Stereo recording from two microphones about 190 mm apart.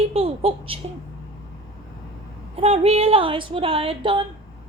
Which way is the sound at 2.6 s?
30° right (ahead or behind).